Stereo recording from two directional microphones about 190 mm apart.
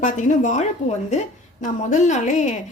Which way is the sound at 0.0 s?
40° left (ahead or behind).